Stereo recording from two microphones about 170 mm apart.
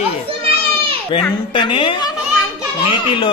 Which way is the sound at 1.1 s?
30° left (ahead or behind).